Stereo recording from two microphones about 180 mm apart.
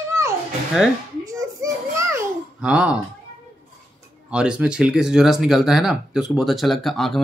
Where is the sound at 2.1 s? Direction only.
5° right (ahead or behind).